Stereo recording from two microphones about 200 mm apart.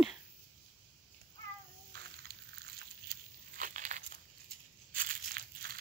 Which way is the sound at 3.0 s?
40° right (ahead or behind).